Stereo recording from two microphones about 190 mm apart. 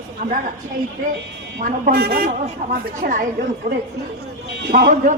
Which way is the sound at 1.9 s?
55° right (ahead or behind).